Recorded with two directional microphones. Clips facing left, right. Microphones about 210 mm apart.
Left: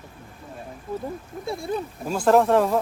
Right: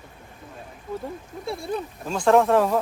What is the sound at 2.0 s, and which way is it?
Speech, 5° left (ahead or behind).